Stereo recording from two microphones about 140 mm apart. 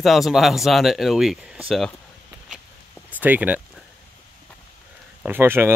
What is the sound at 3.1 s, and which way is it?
Speech, 10° right (ahead or behind).